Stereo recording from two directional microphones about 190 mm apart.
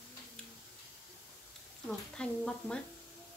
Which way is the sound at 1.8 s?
5° left (ahead or behind).